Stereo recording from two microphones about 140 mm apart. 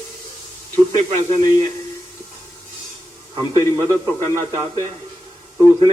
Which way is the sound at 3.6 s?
20° left (ahead or behind).